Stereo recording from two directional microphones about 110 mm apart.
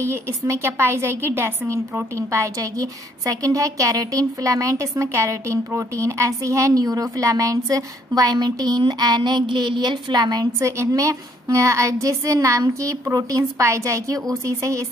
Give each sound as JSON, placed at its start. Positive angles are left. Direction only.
{"t": 0.0, "sound": "a woman's voice", "side_deg": -25}
{"t": 10.6, "sound": "a woman's voice", "side_deg": -30}